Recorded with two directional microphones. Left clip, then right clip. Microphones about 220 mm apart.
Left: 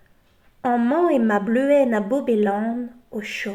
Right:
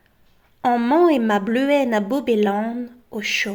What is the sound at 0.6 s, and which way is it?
A woman's voice, 50° right (ahead or behind).